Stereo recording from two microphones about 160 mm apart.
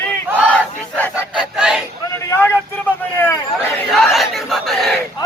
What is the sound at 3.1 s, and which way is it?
Hubbub, 15° left (ahead or behind).